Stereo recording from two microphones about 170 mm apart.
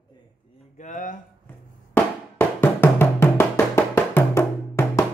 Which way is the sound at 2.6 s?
15° left (ahead or behind).